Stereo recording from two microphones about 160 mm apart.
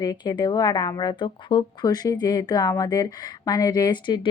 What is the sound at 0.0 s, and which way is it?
Speech, 25° left (ahead or behind).